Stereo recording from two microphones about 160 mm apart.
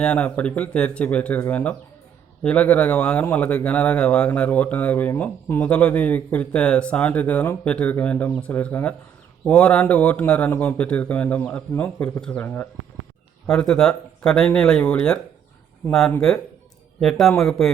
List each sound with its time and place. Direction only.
0.0 s speech: 10° left (ahead or behind)